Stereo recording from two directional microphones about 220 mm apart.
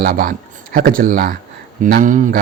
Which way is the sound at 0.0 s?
40° right (ahead or behind).